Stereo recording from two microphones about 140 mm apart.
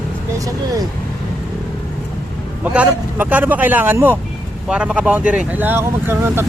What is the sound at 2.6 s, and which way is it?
Speech, 10° right (ahead or behind).